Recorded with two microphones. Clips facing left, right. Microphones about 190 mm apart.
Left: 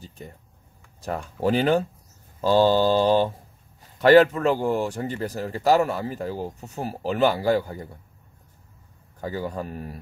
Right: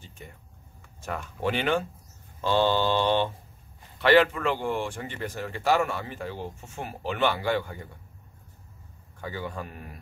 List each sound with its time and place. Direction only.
0.0 s a sound: 35° left (ahead or behind)
1.0 s speech: 35° left (ahead or behind)
9.2 s speech: 40° left (ahead or behind)